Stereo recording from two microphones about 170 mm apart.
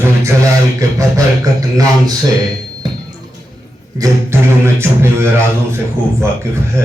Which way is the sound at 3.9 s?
20° right (ahead or behind).